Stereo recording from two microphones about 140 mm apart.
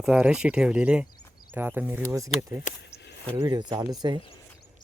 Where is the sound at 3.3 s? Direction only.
35° right (ahead or behind).